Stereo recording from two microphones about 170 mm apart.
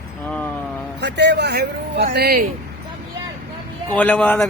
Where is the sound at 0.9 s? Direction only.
90° right; by 2.1 s 75° right (ahead or behind).